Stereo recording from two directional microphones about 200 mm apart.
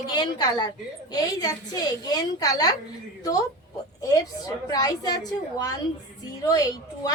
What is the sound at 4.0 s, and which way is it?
A woman's voice, 15° left (ahead or behind).